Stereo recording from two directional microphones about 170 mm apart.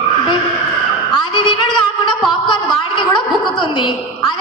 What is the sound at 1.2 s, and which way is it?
A woman's voice, 30° left (ahead or behind).